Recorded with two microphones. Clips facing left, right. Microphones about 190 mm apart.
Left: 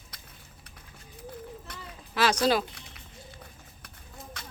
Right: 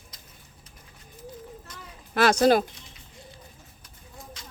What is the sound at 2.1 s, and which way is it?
Speech, 55° right (ahead or behind).